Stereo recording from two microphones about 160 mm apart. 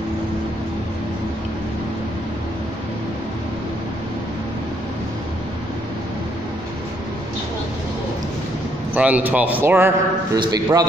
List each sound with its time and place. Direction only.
8.9 s a man's voice: 10° right (ahead or behind)
10.4 s a man's voice: 25° right (ahead or behind)